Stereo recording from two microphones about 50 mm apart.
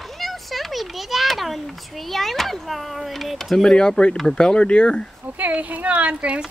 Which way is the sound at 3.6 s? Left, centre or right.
Centre.